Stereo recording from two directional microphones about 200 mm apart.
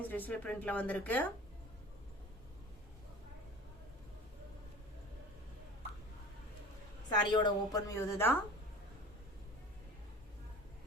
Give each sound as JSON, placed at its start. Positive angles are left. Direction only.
{"t": 0.0, "sound": "speech", "side_deg": 10}
{"t": 7.2, "sound": "speech", "side_deg": 20}